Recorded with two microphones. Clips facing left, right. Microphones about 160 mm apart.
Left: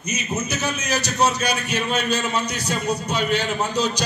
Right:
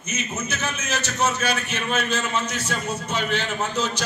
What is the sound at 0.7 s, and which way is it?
A man's voice, 15° left (ahead or behind).